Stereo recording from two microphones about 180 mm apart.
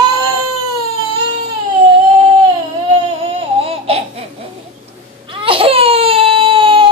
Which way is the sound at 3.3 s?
35° right (ahead or behind).